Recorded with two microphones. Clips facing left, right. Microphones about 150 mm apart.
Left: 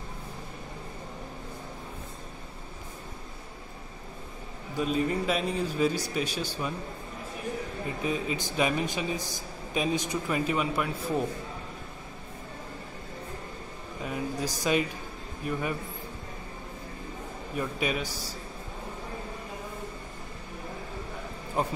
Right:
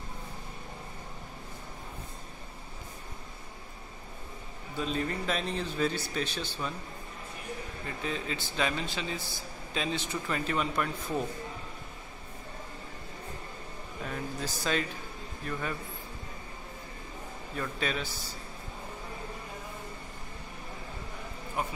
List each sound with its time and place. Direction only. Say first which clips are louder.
4.7 s speech: left 5 dB; 10° left (ahead or behind)
8.0 s speech: left 4 dB; 10° left (ahead or behind)
14.0 s speech: left 5 dB; 10° left (ahead or behind)
17.6 s speech: left 3 dB; 10° left (ahead or behind)
21.6 s speech: left 5 dB; 35° left (ahead or behind)